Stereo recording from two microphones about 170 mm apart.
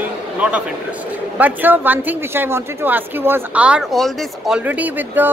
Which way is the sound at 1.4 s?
10° right (ahead or behind).